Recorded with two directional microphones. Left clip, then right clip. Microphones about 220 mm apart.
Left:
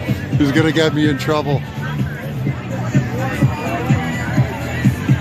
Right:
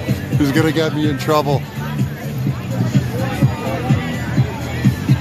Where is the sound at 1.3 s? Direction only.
10° right (ahead or behind).